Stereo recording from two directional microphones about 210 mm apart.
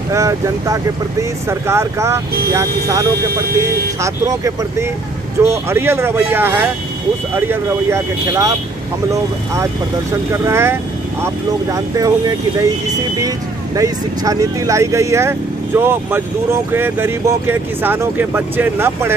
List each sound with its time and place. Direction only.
0.1 s speech: 15° right (ahead or behind)
10.3 s speech: 10° right (ahead or behind)
13.7 s speech: 15° right (ahead or behind)